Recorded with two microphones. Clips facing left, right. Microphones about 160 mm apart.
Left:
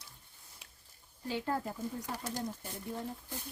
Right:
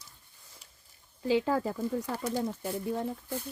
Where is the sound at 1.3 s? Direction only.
90° right.